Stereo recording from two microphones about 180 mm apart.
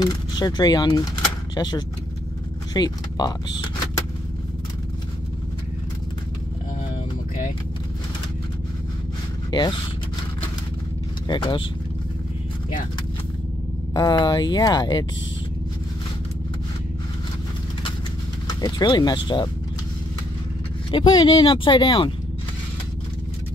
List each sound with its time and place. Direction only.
0.0 s speech: 20° left (ahead or behind)
9.5 s speech: 25° left (ahead or behind)
11.2 s speech: 25° left (ahead or behind)
13.9 s speech: 25° left (ahead or behind)
18.6 s speech: 25° left (ahead or behind)
20.9 s speech: 30° left (ahead or behind)